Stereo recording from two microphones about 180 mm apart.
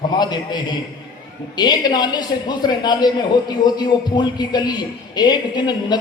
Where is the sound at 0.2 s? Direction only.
25° left (ahead or behind).